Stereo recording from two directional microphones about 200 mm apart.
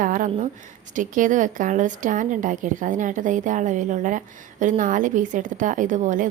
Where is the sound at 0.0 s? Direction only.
40° right (ahead or behind).